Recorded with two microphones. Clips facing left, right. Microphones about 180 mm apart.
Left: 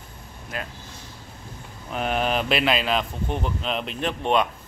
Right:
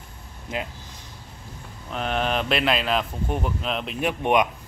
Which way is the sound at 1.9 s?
5° left (ahead or behind).